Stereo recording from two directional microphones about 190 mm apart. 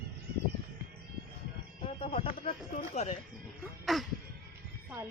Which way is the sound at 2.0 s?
30° left (ahead or behind).